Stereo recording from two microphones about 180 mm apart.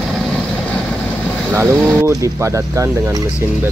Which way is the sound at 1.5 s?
10° right (ahead or behind).